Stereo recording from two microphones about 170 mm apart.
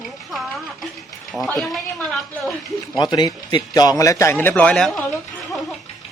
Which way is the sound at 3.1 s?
25° left (ahead or behind).